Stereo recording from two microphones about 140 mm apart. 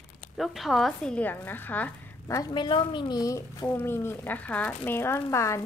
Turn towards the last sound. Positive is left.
turn(degrees=20)  # may be behind; listen again after turning